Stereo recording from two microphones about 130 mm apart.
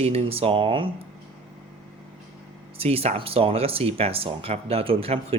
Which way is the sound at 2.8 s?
50° right (ahead or behind).